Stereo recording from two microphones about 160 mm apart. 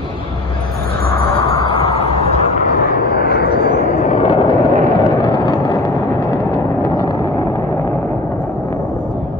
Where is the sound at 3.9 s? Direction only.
50° left (ahead or behind).